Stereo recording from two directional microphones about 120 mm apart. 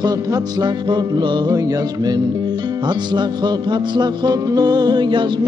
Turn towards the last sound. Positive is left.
turn(degrees=-40)  # may be behind; listen again after turning